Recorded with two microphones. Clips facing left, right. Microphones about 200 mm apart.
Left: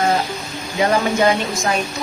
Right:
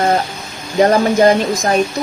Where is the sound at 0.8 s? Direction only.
40° right (ahead or behind).